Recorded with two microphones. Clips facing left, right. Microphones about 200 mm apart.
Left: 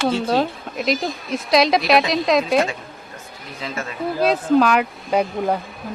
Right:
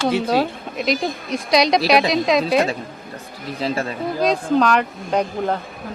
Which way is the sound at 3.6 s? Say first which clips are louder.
Right 6 dB; 35° right (ahead or behind).